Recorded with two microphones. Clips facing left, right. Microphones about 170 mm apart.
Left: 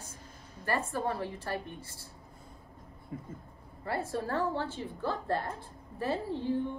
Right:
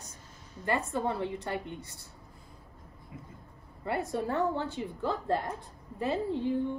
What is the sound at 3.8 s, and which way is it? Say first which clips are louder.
A woman's voice: right 2 dB; 20° right (ahead or behind).